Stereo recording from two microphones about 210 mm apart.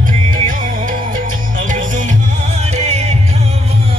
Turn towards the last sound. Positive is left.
turn(degrees=-30)  # may be behind; listen again after turning